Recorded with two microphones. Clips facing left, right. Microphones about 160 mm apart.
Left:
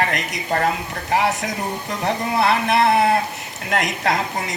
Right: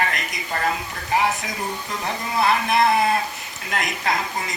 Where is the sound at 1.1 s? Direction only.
70° left (ahead or behind).